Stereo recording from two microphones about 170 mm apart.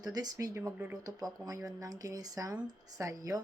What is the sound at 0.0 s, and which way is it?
Speech, 25° right (ahead or behind).